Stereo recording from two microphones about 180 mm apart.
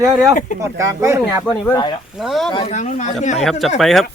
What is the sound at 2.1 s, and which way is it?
Speech, centre (ahead or behind).